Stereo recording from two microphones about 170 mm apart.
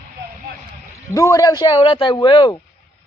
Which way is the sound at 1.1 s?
20° left (ahead or behind).